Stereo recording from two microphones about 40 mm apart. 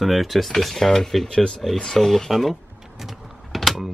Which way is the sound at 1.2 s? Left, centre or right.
Centre.